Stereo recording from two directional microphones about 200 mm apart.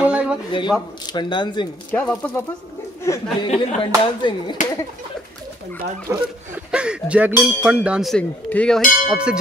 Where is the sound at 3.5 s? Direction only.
30° left (ahead or behind).